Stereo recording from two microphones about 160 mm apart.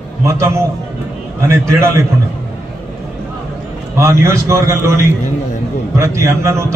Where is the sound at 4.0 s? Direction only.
20° right (ahead or behind).